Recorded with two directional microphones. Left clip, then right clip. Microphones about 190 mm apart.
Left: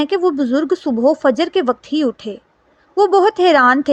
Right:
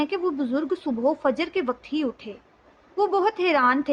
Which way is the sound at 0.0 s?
35° left (ahead or behind).